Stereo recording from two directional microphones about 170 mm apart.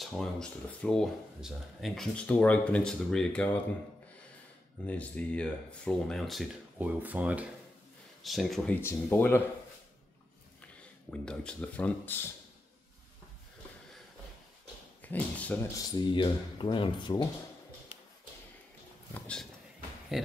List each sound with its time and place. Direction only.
0.0 s speech: centre (ahead or behind)
4.8 s speech: 10° left (ahead or behind)
8.8 s speech: 10° left (ahead or behind)
11.1 s speech: 5° left (ahead or behind)
15.0 s speech: 10° left (ahead or behind)
16.0 s speech: 30° left (ahead or behind)
19.1 s speech: 5° left (ahead or behind)